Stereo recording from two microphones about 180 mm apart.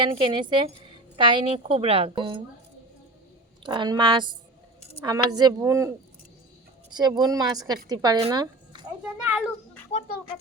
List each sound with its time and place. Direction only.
0.0 s a woman's voice: 25° right (ahead or behind)
3.6 s a woman's voice: 25° right (ahead or behind)
6.9 s a woman's voice: 20° right (ahead or behind)
8.3 s a sound: 25° right (ahead or behind)
9.2 s a sound: 5° right (ahead or behind)
9.9 s speech: 35° left (ahead or behind)